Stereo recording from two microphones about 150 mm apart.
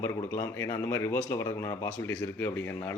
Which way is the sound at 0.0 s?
15° left (ahead or behind).